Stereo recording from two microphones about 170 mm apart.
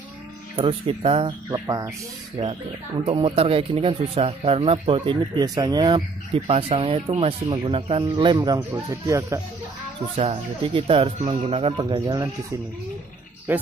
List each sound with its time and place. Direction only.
0.7 s speech: 35° right (ahead or behind); by 9.4 s 20° right (ahead or behind)
10.1 s speech: 35° right (ahead or behind)
13.5 s speech: 10° right (ahead or behind)